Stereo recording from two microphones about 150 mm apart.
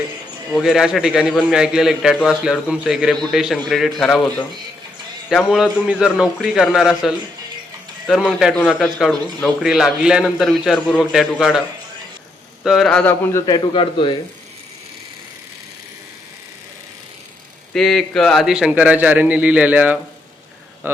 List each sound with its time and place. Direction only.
0.6 s a man's voice: 5° right (ahead or behind)
12.6 s a man's voice: centre (ahead or behind)
13.4 s speech: 30° left (ahead or behind)
17.7 s a man's voice: 5° left (ahead or behind); by 21.0 s 15° right (ahead or behind)